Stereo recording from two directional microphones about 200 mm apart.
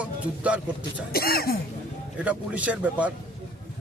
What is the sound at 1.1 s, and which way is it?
Speech, 50° left (ahead or behind).